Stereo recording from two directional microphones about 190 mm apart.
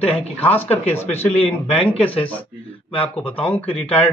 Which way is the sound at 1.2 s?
30° left (ahead or behind).